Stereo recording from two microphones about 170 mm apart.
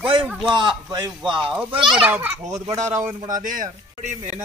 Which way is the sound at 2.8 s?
45° right (ahead or behind).